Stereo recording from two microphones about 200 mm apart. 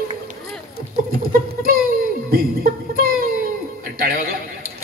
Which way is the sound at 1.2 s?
45° right (ahead or behind).